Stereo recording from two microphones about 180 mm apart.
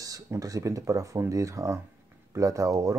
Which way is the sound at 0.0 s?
20° right (ahead or behind).